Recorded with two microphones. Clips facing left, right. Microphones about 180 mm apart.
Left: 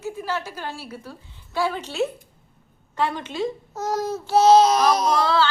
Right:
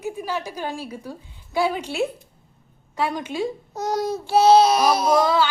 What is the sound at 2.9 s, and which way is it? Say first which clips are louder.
A child's voice: right 1 dB; 10° right (ahead or behind).